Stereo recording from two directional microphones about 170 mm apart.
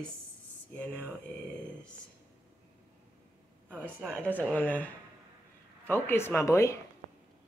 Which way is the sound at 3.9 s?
15° right (ahead or behind).